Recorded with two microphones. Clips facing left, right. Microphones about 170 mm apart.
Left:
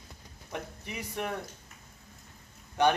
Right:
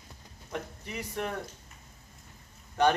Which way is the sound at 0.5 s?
15° left (ahead or behind).